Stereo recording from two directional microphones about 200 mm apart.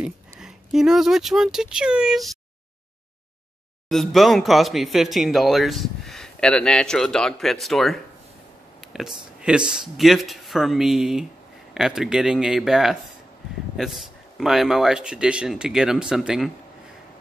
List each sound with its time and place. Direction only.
0.0 s speech: 5° right (ahead or behind)
3.9 s speech: centre (ahead or behind)
8.8 s a sound: centre (ahead or behind)
9.9 s speech: centre (ahead or behind)